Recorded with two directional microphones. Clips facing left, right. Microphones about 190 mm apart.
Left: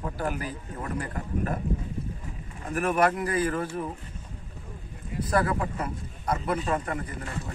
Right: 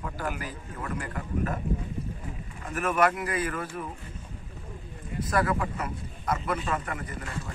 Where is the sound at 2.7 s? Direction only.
35° left (ahead or behind).